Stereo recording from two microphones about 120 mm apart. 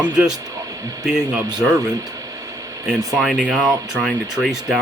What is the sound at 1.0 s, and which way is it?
Speech, 5° right (ahead or behind).